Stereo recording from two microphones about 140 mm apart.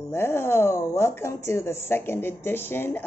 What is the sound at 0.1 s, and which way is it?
A woman's voice, 15° left (ahead or behind).